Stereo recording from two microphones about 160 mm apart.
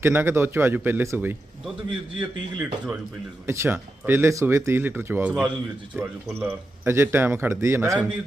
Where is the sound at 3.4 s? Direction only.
15° right (ahead or behind).